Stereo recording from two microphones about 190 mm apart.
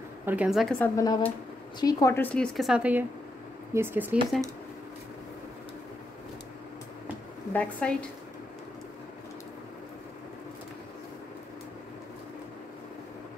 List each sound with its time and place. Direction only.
0.2 s a woman's voice: 10° right (ahead or behind)
0.9 s a woman's voice: 15° left (ahead or behind); by 4.2 s 10° right (ahead or behind)
7.5 s speech: 5° left (ahead or behind)